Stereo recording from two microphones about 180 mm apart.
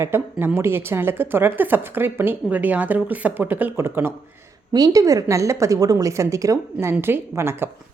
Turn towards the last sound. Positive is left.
turn(degrees=-15)  # may be behind; listen again after turning